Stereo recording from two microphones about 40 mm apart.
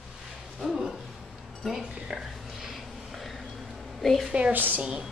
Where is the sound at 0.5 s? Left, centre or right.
Centre.